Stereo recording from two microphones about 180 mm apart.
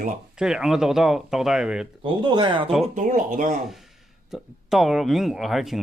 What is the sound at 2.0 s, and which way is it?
Speech, 25° right (ahead or behind).